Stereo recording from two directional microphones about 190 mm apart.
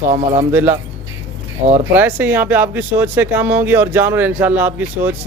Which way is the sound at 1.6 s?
40° right (ahead or behind).